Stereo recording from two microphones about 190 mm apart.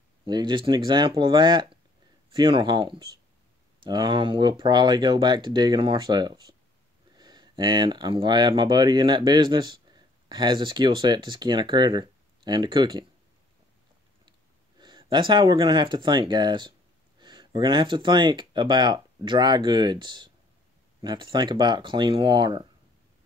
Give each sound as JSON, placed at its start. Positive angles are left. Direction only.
{"t": 0.2, "sound": "speech", "side_deg": -25}
{"t": 14.8, "sound": "speech", "side_deg": -25}